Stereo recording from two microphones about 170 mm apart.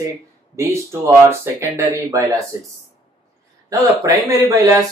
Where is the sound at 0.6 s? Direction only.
15° right (ahead or behind).